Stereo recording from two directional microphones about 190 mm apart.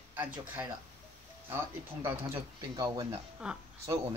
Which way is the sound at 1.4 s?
10° right (ahead or behind).